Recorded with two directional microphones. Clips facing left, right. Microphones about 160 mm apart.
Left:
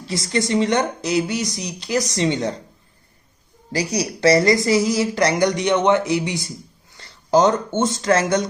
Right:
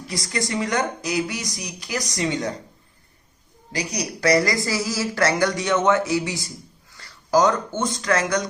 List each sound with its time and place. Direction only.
0.0 s speech: 25° left (ahead or behind)
3.7 s speech: 30° left (ahead or behind)